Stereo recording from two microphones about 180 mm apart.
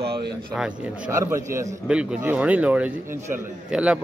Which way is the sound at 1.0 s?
15° right (ahead or behind).